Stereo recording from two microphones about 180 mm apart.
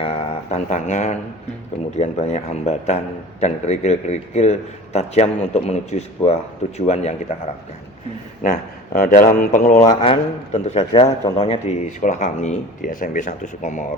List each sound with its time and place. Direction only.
0.0 s a sound: 35° left (ahead or behind)
2.0 s a man's voice: 35° left (ahead or behind)
9.0 s speech: 50° left (ahead or behind)
9.9 s a man's voice: 35° left (ahead or behind)